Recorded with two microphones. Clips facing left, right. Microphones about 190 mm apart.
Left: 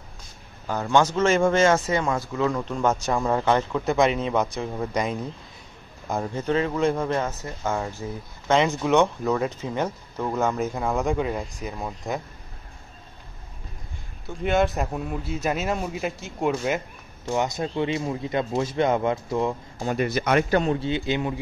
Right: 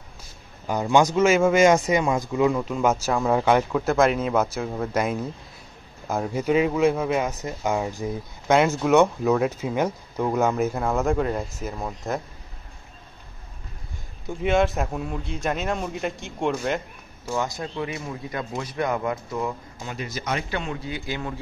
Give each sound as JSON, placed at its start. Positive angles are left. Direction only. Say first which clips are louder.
{"t": 0.7, "sound": "speech", "louder": "right 2 dB", "side_deg": -15}
{"t": 14.4, "sound": "a man's voice", "louder": "right 1 dB", "side_deg": 0}
{"t": 17.3, "sound": "speech", "louder": "left 3 dB", "side_deg": 20}
{"t": 19.8, "sound": "speech", "louder": "left 11 dB", "side_deg": 45}
{"t": 20.1, "sound": "speech", "louder": "left 6 dB", "side_deg": 60}
{"t": 20.4, "sound": "speech", "louder": "left 8 dB", "side_deg": 40}